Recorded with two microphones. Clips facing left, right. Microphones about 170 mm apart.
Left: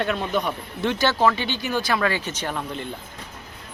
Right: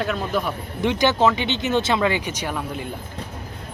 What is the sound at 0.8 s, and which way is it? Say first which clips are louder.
Speech: right 2 dB; 15° right (ahead or behind).